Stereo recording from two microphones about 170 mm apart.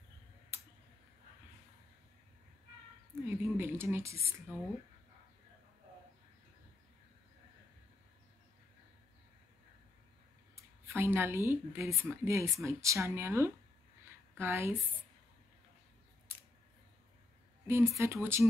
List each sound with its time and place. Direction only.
3.3 s speech: 10° right (ahead or behind)
10.5 s speech: 15° right (ahead or behind)
17.6 s speech: 15° right (ahead or behind)